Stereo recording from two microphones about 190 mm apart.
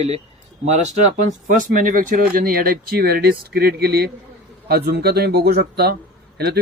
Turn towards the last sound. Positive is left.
turn(degrees=-55)  # may be behind; listen again after turning